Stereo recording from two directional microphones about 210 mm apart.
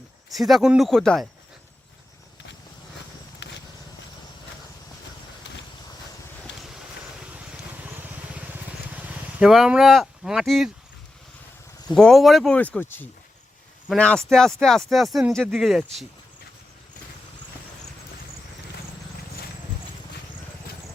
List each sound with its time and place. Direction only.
0.3 s speech: centre (ahead or behind)
3.4 s a sound: 60° left (ahead or behind)
6.6 s boat: centre (ahead or behind)
7.3 s vehicle: 5° right (ahead or behind)
11.9 s speech: 5° left (ahead or behind)